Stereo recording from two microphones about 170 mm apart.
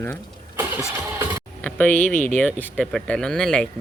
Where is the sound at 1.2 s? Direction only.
15° right (ahead or behind).